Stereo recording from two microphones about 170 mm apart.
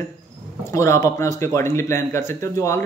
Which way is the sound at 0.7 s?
15° left (ahead or behind).